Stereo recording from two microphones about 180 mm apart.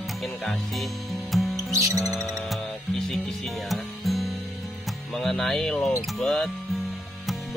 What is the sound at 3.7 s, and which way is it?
Music, centre (ahead or behind).